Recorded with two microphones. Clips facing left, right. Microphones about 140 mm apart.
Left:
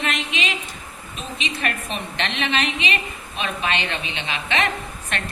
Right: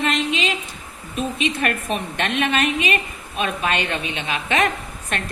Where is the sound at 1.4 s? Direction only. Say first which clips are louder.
Right 2 dB; 50° right (ahead or behind).